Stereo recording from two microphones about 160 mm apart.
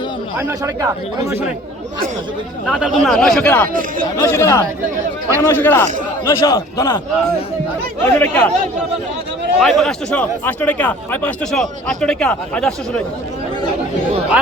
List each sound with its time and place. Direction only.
0.3 s speech: 15° right (ahead or behind)
2.6 s speech: centre (ahead or behind)
3.7 s speech: 60° right (ahead or behind)
4.2 s speech: 15° left (ahead or behind)
8.0 s speech: 10° left (ahead or behind)
9.6 s speech: 5° left (ahead or behind)